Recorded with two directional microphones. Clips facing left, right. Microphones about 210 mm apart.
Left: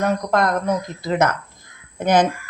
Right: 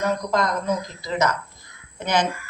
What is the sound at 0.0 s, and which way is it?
Speech, 60° left (ahead or behind).